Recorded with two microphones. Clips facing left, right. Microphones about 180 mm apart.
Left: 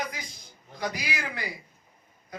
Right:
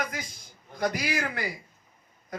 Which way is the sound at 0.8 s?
55° right (ahead or behind).